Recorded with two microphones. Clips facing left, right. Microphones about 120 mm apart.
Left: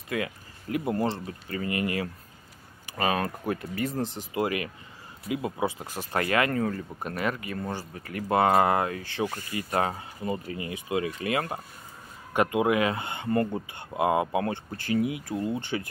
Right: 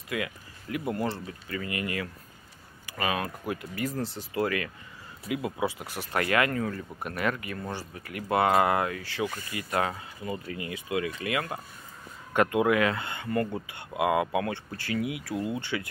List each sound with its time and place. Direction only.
0.1 s speech: 30° left (ahead or behind)
1.2 s speech: 35° left (ahead or behind)
7.0 s speech: 25° left (ahead or behind)
12.4 s speech: 20° left (ahead or behind)
15.3 s speech: 15° right (ahead or behind)